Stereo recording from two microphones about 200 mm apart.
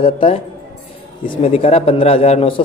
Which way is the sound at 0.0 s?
30° left (ahead or behind).